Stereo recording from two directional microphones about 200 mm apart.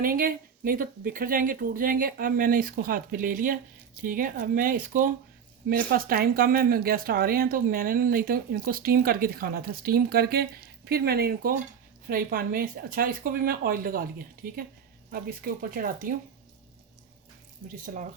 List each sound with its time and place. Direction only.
0.0 s speech: 45° right (ahead or behind)